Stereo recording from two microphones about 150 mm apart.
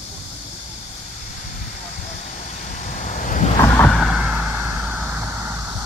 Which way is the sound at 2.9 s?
60° left (ahead or behind).